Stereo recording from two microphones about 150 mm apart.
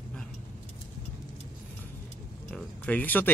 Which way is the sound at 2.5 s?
10° left (ahead or behind).